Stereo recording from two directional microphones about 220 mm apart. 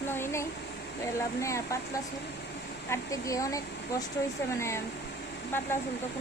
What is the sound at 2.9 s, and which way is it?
Speech, 15° left (ahead or behind).